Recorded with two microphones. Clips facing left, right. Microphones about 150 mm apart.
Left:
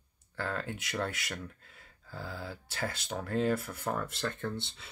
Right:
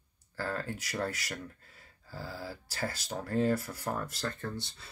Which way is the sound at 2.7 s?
25° left (ahead or behind).